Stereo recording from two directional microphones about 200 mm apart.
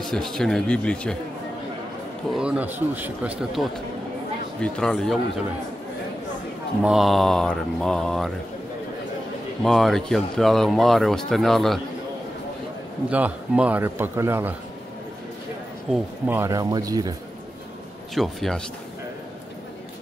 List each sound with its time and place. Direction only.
0.0 s speech: centre (ahead or behind)
2.3 s speech: 5° right (ahead or behind)
6.8 s speech: centre (ahead or behind)
9.6 s speech: centre (ahead or behind)
13.1 s a man's voice: 5° right (ahead or behind)
15.9 s a man's voice: 10° right (ahead or behind)
18.1 s speech: centre (ahead or behind)